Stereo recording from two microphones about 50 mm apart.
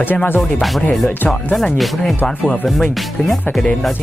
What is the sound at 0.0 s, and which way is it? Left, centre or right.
Music, left.